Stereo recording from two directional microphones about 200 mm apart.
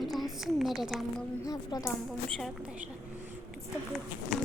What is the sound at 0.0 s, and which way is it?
A woman's voice, centre (ahead or behind).